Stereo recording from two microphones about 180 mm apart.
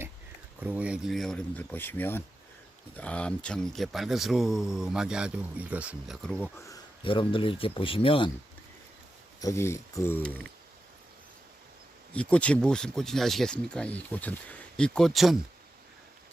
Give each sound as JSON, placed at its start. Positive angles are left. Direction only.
{"t": 0.6, "sound": "speech", "side_deg": -10}
{"t": 6.2, "sound": "speech", "side_deg": 5}
{"t": 7.0, "sound": "speech", "side_deg": 30}
{"t": 9.4, "sound": "speech", "side_deg": 15}
{"t": 12.1, "sound": "speech", "side_deg": 5}